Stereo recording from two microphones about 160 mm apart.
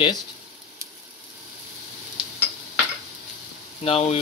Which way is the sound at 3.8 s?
40° left (ahead or behind).